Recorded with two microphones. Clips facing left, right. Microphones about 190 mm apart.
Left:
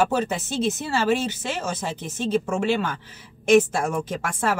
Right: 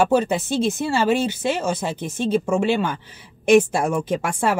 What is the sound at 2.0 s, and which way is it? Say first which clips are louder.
Speech: right 4 dB; 55° right (ahead or behind).